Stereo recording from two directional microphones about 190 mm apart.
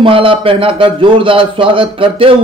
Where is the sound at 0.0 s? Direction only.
30° right (ahead or behind).